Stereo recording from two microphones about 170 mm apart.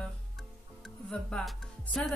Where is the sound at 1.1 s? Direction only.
5° left (ahead or behind).